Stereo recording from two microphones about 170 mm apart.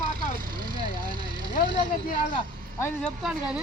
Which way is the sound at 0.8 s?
25° right (ahead or behind).